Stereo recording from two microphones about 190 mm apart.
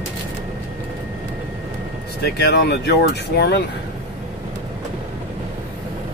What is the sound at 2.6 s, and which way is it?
Speech, 60° left (ahead or behind).